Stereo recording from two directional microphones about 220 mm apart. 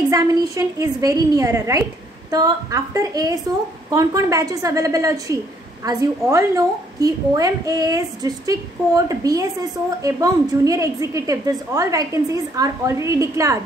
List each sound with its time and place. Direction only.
0.1 s a woman's voice: 15° right (ahead or behind)